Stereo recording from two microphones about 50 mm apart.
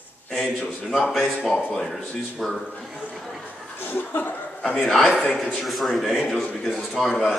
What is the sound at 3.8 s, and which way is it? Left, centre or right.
Speech, left.